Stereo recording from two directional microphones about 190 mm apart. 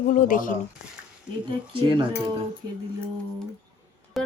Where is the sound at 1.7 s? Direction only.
25° right (ahead or behind).